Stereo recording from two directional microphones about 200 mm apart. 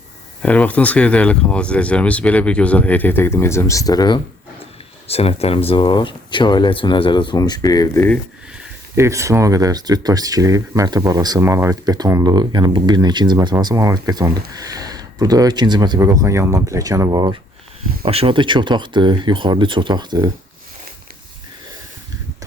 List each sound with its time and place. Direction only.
0.4 s speech: 5° left (ahead or behind)
9.0 s speech: 15° right (ahead or behind)